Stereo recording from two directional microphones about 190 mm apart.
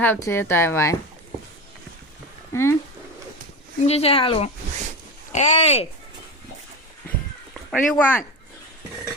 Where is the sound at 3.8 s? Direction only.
30° left (ahead or behind).